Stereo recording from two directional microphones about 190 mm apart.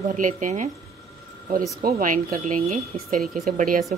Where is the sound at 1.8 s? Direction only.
45° right (ahead or behind).